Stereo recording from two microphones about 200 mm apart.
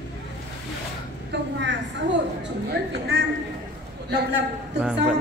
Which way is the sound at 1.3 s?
60° right (ahead or behind).